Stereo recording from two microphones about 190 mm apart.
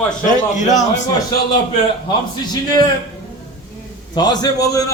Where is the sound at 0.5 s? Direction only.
40° left (ahead or behind).